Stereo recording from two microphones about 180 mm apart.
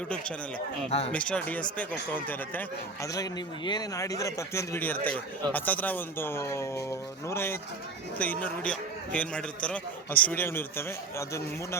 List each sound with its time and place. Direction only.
0.9 s speech: 35° left (ahead or behind)
1.1 s speech: 5° left (ahead or behind)